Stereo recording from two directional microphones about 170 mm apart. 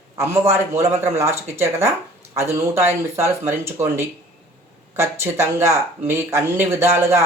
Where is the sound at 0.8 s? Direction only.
15° right (ahead or behind).